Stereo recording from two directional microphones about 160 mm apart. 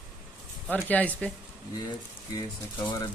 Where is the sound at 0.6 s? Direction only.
10° left (ahead or behind).